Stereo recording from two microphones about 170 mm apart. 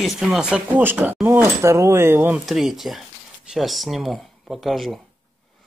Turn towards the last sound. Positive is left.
turn(degrees=0)  # may be behind; listen again after turning